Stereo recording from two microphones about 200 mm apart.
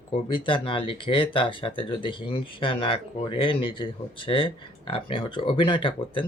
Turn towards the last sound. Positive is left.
turn(degrees=25)  # may be behind; listen again after turning